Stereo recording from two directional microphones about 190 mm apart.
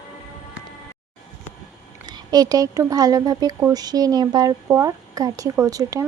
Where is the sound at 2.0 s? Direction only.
20° right (ahead or behind).